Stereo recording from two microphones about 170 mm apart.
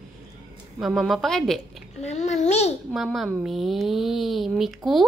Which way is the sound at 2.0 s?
40° left (ahead or behind).